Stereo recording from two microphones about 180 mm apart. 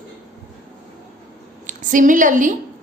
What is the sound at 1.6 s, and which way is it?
Speech, 45° right (ahead or behind).